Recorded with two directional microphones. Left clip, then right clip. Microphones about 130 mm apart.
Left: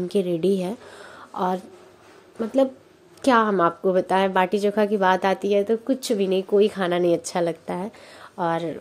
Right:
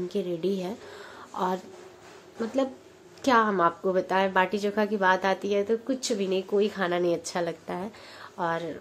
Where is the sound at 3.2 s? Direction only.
35° left (ahead or behind).